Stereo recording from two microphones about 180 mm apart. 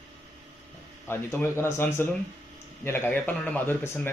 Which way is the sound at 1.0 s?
10° left (ahead or behind).